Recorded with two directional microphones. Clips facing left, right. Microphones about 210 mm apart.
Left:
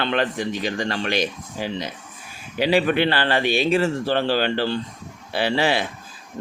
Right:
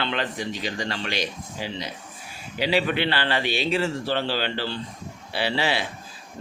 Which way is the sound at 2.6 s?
50° left (ahead or behind).